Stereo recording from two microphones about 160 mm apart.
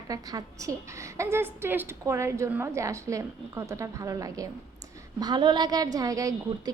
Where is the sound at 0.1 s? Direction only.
20° right (ahead or behind).